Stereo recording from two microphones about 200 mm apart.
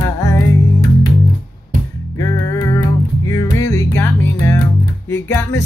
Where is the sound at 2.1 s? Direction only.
15° left (ahead or behind).